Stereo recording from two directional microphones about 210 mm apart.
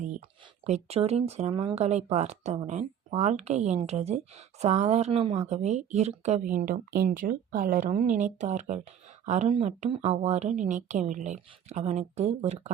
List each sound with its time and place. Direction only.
0.6 s speech: 30° right (ahead or behind)